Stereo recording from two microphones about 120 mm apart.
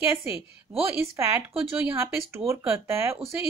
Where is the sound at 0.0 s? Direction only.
15° right (ahead or behind).